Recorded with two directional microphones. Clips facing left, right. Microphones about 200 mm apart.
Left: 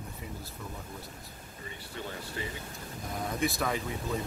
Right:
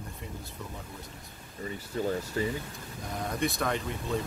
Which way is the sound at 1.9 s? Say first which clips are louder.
Right 9 dB; 40° right (ahead or behind).